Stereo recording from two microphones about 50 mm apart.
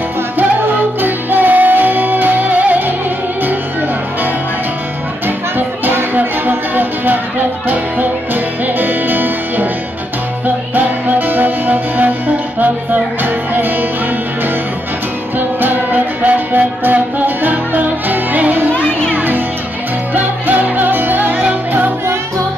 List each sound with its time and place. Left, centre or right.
1.0 s music: right
5.6 s music: right
15.3 s music: right